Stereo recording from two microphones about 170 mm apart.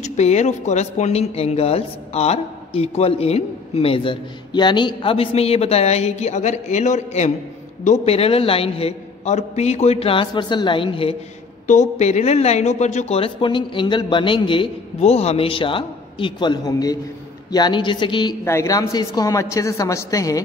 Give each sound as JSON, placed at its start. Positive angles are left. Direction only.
{"t": 0.0, "sound": "speech", "side_deg": 40}
{"t": 11.6, "sound": "a woman's voice", "side_deg": 45}
{"t": 18.4, "sound": "a woman's voice", "side_deg": 15}